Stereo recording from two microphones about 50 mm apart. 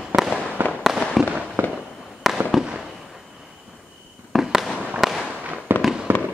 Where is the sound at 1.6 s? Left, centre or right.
Right.